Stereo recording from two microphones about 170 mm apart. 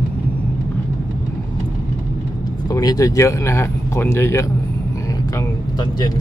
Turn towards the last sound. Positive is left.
turn(degrees=25)  # may be behind; listen again after turning